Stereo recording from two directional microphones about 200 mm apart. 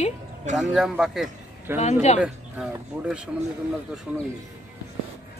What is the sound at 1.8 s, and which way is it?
Speech, 35° left (ahead or behind).